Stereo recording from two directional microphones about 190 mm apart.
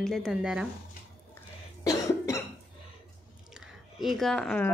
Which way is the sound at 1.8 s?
15° left (ahead or behind).